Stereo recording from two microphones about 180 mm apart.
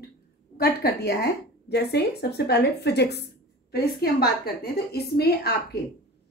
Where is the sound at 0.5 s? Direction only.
60° left (ahead or behind).